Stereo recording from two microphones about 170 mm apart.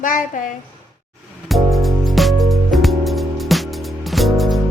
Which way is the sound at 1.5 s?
Centre (ahead or behind).